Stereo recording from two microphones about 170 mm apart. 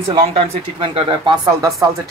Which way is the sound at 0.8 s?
30° right (ahead or behind).